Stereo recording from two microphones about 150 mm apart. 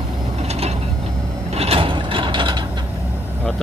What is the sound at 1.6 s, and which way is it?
Vehicle, 40° right (ahead or behind).